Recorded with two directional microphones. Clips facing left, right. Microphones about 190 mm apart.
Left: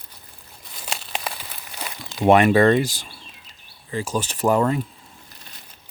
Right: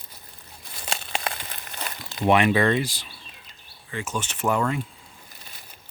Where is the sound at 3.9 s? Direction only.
35° left (ahead or behind).